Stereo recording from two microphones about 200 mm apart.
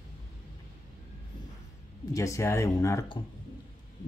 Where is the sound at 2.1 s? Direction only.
15° left (ahead or behind).